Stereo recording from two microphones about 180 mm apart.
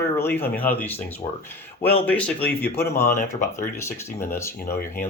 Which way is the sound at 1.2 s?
30° left (ahead or behind).